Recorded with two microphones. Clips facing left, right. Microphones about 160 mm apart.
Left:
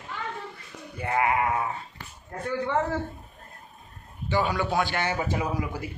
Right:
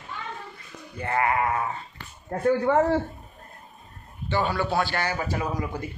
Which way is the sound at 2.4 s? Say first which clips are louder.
Right 6 dB; 45° right (ahead or behind).